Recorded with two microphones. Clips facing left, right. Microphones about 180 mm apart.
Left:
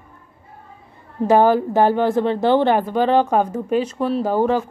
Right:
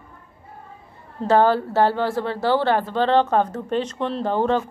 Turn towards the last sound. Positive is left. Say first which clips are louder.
# left 3 dB
turn(degrees=10)  # may be behind; listen again after turning